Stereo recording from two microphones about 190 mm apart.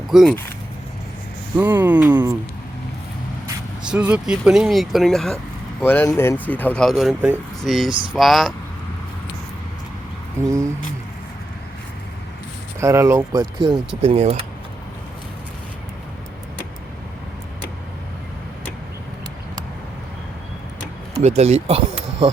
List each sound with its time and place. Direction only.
0.1 s speech: centre (ahead or behind)
1.5 s speech: 10° right (ahead or behind)
3.8 s speech: 5° right (ahead or behind)
7.9 s speech: 25° right (ahead or behind)
8.1 s speech: centre (ahead or behind)
10.4 s speech: 15° right (ahead or behind)
12.8 s speech: 15° right (ahead or behind)
13.7 s speech: 30° right (ahead or behind)
21.2 s speech: 35° right (ahead or behind)